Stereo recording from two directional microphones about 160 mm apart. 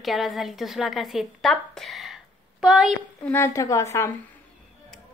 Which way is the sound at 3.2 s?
15° left (ahead or behind).